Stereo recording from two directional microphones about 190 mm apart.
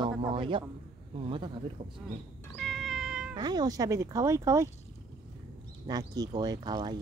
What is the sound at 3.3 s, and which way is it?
Speech, 20° right (ahead or behind).